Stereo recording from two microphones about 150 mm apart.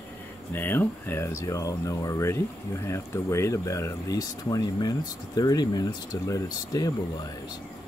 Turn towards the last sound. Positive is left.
turn(degrees=25)  # may be behind; listen again after turning